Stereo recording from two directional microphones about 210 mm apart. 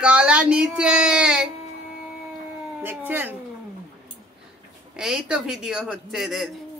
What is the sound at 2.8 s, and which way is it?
Speech, 10° right (ahead or behind).